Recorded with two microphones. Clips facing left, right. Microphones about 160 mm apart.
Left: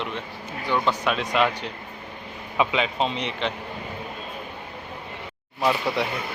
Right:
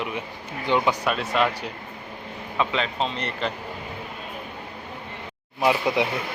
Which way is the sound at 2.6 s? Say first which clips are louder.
Left 2 dB; 5° left (ahead or behind).